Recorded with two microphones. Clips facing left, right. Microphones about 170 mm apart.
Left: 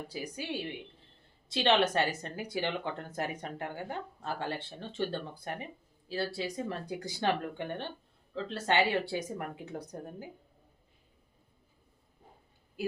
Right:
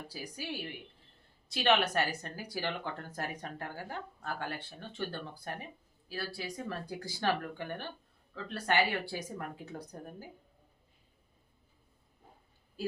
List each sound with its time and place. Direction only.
0.1 s speech: 20° left (ahead or behind)